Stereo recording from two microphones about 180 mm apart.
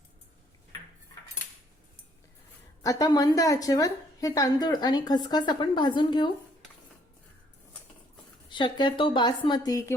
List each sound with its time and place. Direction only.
2.8 s a woman's voice: 20° left (ahead or behind)
8.4 s a woman's voice: 25° left (ahead or behind)